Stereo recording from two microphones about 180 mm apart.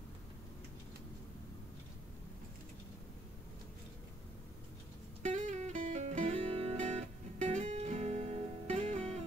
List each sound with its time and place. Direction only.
5.2 s music: 40° right (ahead or behind)